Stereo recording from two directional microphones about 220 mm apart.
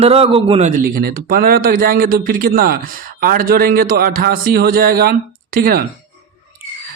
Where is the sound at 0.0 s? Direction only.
25° right (ahead or behind); by 5.8 s 40° right (ahead or behind).